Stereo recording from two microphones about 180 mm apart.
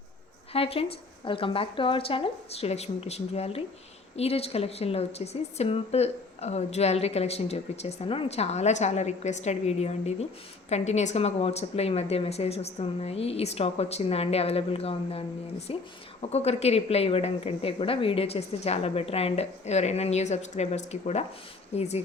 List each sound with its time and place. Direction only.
0.5 s a woman's voice: 30° left (ahead or behind)